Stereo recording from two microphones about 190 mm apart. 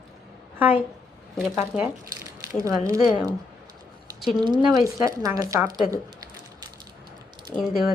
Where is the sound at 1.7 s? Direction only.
5° right (ahead or behind).